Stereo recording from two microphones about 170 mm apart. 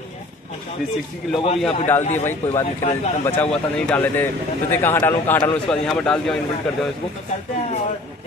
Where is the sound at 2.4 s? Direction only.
10° left (ahead or behind).